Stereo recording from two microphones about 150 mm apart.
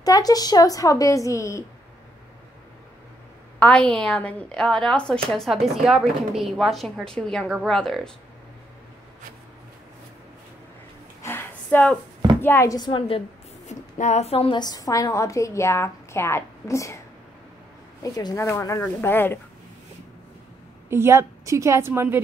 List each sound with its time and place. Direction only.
0.0 s a woman's voice: 25° left (ahead or behind)
3.5 s a woman's voice: 10° left (ahead or behind)
11.2 s a sound: 15° left (ahead or behind)
12.4 s a woman's voice: 15° left (ahead or behind); by 13.2 s 30° left (ahead or behind)
13.7 s a woman's voice: 50° left (ahead or behind)
14.6 s a woman's voice: 25° left (ahead or behind)
18.0 s a woman's voice: 25° left (ahead or behind)
20.9 s a woman's voice: 15° right (ahead or behind)